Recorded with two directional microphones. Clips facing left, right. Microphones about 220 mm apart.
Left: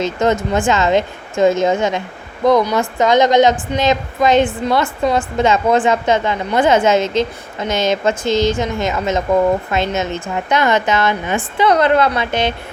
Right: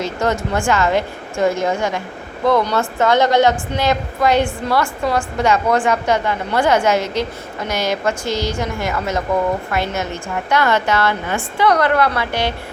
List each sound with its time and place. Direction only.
0.0 s a woman's voice: 20° left (ahead or behind)